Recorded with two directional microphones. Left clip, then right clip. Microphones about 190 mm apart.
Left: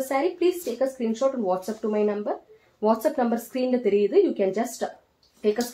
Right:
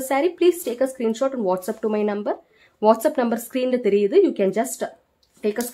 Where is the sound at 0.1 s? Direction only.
45° right (ahead or behind).